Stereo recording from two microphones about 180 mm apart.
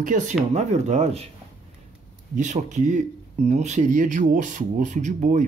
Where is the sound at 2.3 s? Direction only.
40° right (ahead or behind).